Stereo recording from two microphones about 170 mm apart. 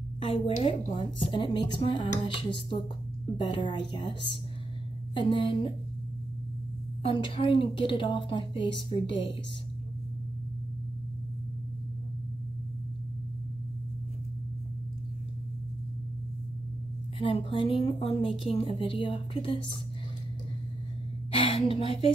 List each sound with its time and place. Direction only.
0.2 s a woman's voice: 30° left (ahead or behind)
5.1 s a woman's voice: 30° left (ahead or behind)
7.0 s a woman's voice: 30° left (ahead or behind)
17.2 s a woman's voice: 30° left (ahead or behind)
21.3 s a woman's voice: 35° left (ahead or behind)